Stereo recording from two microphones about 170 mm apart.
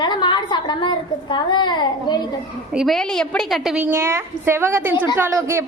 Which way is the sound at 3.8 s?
15° right (ahead or behind).